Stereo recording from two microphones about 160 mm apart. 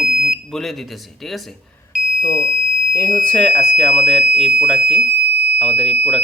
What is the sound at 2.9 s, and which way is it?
Speech, 20° left (ahead or behind).